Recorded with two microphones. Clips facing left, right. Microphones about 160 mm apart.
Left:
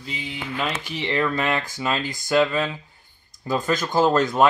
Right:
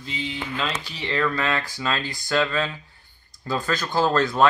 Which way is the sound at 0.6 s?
20° left (ahead or behind).